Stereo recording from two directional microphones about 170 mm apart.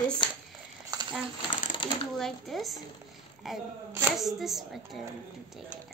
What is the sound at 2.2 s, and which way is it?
A woman's voice, centre (ahead or behind).